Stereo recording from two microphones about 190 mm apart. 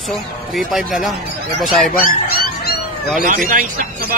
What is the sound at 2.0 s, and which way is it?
Dog, 50° left (ahead or behind).